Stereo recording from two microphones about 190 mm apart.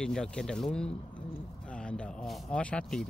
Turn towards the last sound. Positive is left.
turn(degrees=5)  # may be behind; listen again after turning